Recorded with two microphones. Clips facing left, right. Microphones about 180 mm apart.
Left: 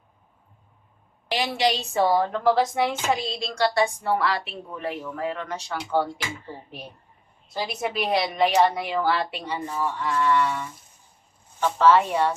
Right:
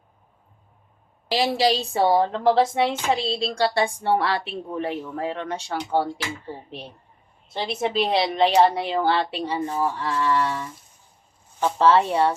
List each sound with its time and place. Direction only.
1.3 s a woman's voice: 35° right (ahead or behind)
7.5 s a woman's voice: 25° right (ahead or behind)
11.9 s speech: 30° right (ahead or behind)